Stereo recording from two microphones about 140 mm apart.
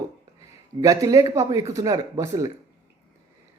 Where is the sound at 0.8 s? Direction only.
25° right (ahead or behind).